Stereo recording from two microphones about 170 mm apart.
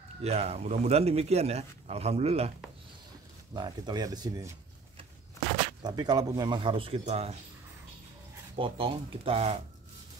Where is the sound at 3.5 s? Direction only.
25° right (ahead or behind).